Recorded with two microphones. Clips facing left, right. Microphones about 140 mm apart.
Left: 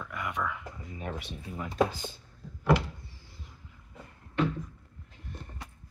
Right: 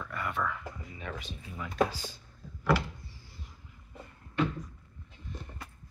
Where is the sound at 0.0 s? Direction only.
10° left (ahead or behind).